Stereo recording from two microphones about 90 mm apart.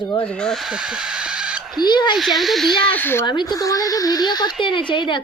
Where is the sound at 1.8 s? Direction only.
55° left (ahead or behind).